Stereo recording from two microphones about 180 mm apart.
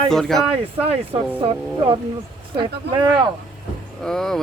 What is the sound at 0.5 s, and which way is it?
Speech, 30° right (ahead or behind).